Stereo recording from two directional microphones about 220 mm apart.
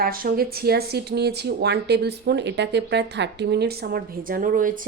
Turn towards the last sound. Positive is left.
turn(degrees=-40)  # may be behind; listen again after turning